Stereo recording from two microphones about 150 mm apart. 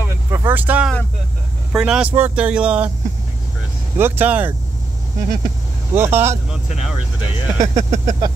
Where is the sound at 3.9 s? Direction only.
15° right (ahead or behind).